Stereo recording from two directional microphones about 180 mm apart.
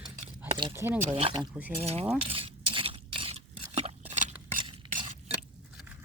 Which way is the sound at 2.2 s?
30° right (ahead or behind).